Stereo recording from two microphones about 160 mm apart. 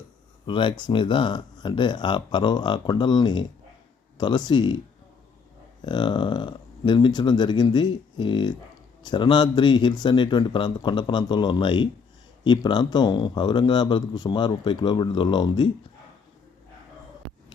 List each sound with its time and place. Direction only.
0.4 s speech: 30° left (ahead or behind)
5.8 s speech: 30° left (ahead or behind)
17.2 s a sound: centre (ahead or behind)